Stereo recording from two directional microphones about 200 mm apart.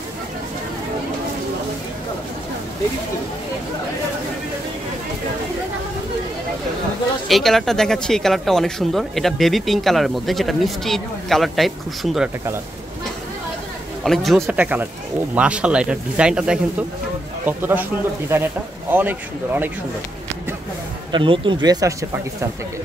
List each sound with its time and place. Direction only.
7.2 s speech: centre (ahead or behind)
14.0 s speech: centre (ahead or behind)
21.1 s speech: 25° right (ahead or behind)